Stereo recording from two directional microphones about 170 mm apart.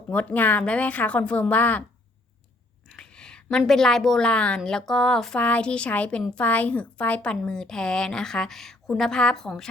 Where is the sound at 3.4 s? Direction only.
Centre (ahead or behind).